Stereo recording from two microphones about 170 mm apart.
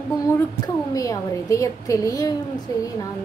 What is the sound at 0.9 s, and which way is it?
A woman's voice, 20° left (ahead or behind).